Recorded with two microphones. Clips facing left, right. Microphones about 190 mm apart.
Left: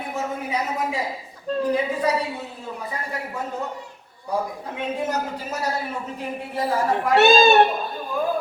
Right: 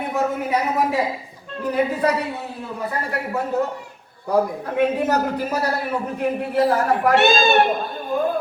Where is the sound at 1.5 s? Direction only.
35° left (ahead or behind).